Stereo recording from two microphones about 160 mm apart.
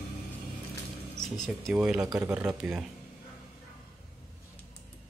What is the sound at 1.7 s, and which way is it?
Speech, 5° right (ahead or behind).